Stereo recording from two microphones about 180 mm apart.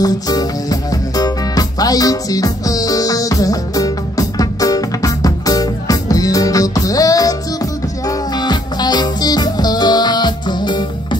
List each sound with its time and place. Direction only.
0.0 s music: 20° left (ahead or behind)
8.4 s music: 25° left (ahead or behind)